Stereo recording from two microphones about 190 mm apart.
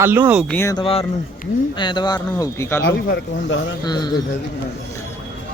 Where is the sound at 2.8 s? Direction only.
65° left (ahead or behind).